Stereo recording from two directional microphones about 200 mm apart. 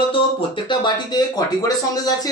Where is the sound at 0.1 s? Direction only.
25° left (ahead or behind).